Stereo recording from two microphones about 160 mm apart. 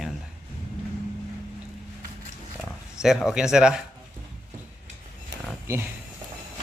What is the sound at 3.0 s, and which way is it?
Speech, centre (ahead or behind).